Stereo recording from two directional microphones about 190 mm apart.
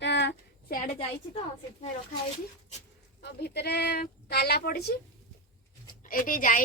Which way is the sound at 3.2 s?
60° left (ahead or behind).